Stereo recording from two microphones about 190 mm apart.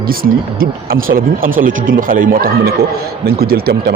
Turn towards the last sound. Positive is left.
turn(degrees=-55)  # may be behind; listen again after turning